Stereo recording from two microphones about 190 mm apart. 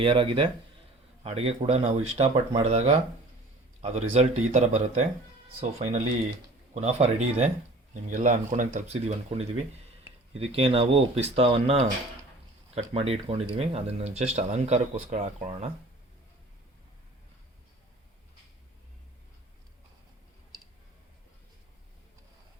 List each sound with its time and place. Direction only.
0.0 s speech: 25° right (ahead or behind)